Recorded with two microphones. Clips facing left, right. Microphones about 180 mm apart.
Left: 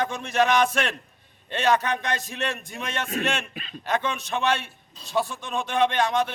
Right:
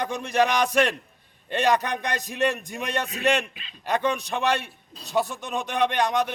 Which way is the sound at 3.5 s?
50° left (ahead or behind).